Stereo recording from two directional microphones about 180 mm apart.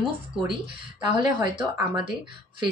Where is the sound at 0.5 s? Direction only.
25° right (ahead or behind).